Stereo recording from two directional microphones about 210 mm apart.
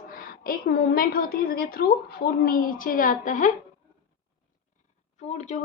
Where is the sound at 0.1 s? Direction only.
40° left (ahead or behind).